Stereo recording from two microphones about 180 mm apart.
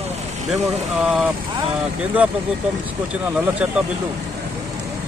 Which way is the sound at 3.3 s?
5° right (ahead or behind).